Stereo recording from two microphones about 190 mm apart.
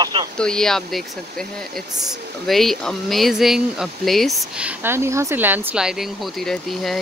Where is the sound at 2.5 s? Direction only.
Centre (ahead or behind).